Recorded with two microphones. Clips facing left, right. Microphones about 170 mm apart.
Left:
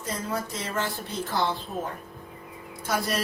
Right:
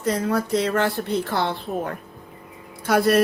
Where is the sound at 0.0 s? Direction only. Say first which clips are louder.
Right 9 dB; 65° right (ahead or behind).